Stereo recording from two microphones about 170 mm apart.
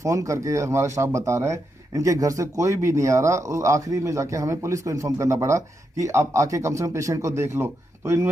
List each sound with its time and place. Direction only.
0.0 s speech: 20° right (ahead or behind)